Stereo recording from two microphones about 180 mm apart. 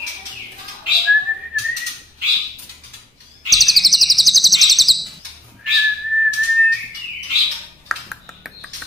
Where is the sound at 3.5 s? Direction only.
Centre (ahead or behind).